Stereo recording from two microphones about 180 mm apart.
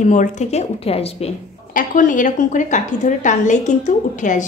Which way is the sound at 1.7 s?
50° left (ahead or behind).